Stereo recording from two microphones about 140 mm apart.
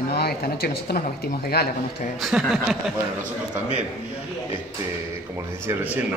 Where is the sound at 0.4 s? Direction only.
90° left.